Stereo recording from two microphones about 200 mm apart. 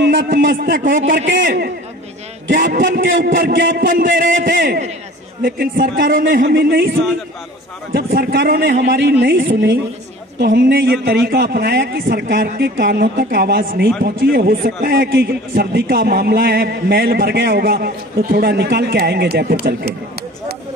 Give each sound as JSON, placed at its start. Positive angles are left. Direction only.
{"t": 0.2, "sound": "a man's voice", "side_deg": -45}
{"t": 1.2, "sound": "a man's voice", "side_deg": -55}
{"t": 7.9, "sound": "a man's voice", "side_deg": -50}
{"t": 9.2, "sound": "a woman's voice", "side_deg": -65}
{"t": 9.5, "sound": "a man's voice", "side_deg": -50}